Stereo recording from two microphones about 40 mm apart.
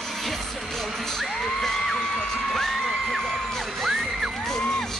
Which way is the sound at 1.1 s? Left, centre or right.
Centre.